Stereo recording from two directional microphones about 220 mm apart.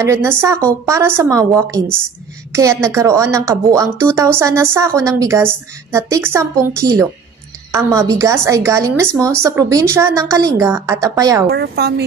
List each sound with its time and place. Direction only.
0.0 s a woman's voice: 10° right (ahead or behind)
11.5 s a woman's voice: 45° right (ahead or behind)